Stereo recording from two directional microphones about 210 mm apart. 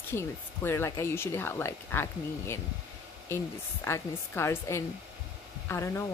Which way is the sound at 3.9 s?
10° left (ahead or behind).